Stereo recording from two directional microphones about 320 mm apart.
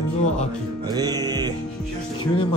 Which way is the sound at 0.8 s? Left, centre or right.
Centre.